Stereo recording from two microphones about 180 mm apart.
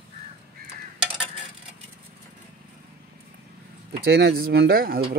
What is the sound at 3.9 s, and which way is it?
Speech, 65° right (ahead or behind).